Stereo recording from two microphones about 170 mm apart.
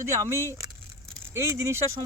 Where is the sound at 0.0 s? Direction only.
15° right (ahead or behind).